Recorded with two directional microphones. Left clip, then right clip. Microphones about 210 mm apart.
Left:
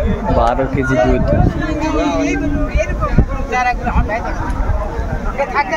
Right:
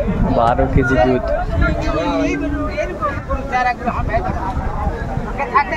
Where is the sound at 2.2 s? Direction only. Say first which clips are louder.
Left 2 dB; 25° left (ahead or behind).